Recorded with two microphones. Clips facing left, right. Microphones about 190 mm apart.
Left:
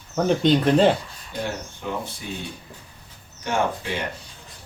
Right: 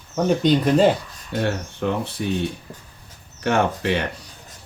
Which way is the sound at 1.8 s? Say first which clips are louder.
Right 8 dB; 70° right (ahead or behind).